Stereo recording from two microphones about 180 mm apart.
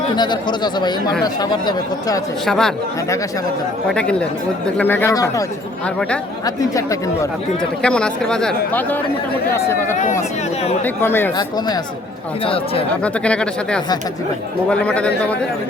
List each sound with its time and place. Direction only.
0.2 s speech: 25° left (ahead or behind)
2.5 s speech: 5° left (ahead or behind)
3.8 s speech: 5° left (ahead or behind)
7.8 s speech: 5° left (ahead or behind)
9.9 s speech: 40° left (ahead or behind)
10.8 s speech: 10° left (ahead or behind); by 12.8 s 30° left (ahead or behind)
13.0 s speech: 5° left (ahead or behind)